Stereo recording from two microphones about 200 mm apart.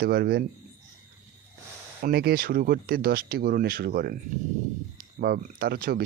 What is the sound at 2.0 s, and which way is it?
Speech, 50° right (ahead or behind).